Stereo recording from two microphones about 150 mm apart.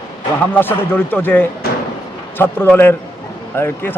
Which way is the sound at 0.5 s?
15° left (ahead or behind).